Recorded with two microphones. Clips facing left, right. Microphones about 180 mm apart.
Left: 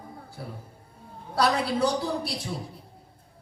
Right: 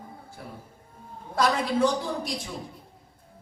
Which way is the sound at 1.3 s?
35° left (ahead or behind).